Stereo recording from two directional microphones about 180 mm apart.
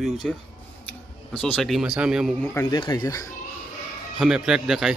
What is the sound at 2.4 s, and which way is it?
Speech, 15° left (ahead or behind).